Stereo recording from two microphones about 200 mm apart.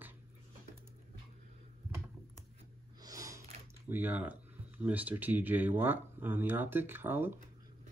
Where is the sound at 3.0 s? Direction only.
15° right (ahead or behind).